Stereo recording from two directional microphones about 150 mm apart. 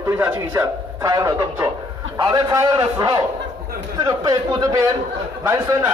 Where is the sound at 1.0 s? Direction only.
20° right (ahead or behind).